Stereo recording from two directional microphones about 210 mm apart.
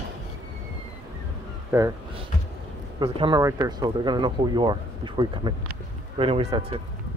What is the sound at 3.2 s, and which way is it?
Speech, 15° right (ahead or behind).